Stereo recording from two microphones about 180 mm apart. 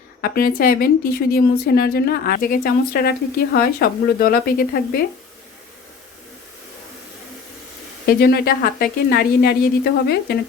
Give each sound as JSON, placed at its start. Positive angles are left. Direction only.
{"t": 0.2, "sound": "a woman's voice", "side_deg": 55}
{"t": 8.0, "sound": "a woman's voice", "side_deg": 60}